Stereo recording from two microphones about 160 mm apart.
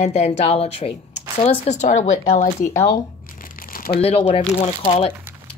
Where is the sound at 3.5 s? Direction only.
60° left (ahead or behind).